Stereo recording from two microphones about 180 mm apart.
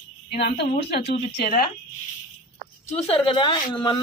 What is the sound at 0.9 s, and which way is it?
Speech, 35° left (ahead or behind).